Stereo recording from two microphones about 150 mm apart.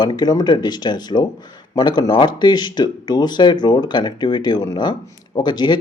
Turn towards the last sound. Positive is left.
turn(degrees=30)  # may be behind; listen again after turning